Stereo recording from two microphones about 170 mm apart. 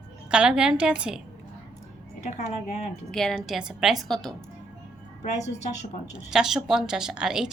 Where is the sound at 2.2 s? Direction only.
40° left (ahead or behind).